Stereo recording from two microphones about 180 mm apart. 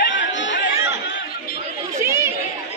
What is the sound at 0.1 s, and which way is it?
Chatter, 90° left.